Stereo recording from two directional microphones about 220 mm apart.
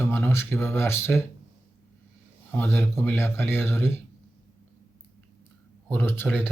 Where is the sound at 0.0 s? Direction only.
10° left (ahead or behind).